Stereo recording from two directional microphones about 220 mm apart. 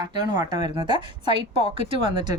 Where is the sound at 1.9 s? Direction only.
20° right (ahead or behind).